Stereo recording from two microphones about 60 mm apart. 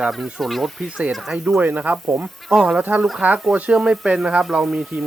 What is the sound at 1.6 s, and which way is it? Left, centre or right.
Speech, right.